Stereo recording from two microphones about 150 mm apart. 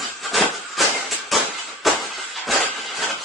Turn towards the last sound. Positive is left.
turn(degrees=0)  # may be behind; listen again after turning